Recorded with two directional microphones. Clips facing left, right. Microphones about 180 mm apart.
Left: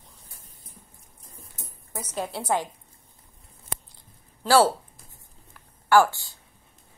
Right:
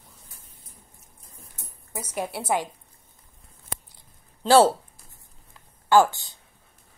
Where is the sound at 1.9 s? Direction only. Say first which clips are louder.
Right 1 dB; 10° right (ahead or behind).